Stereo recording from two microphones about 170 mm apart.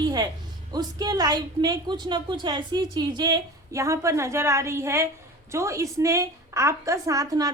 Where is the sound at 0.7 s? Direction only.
20° right (ahead or behind).